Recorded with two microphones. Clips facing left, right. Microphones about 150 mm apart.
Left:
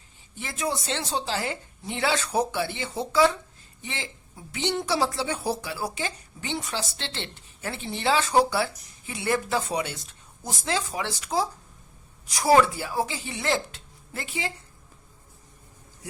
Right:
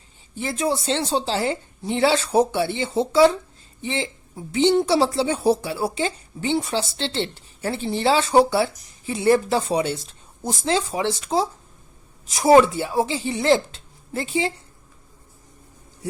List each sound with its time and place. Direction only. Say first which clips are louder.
0.3 s a woman's voice: right 6 dB; 30° right (ahead or behind)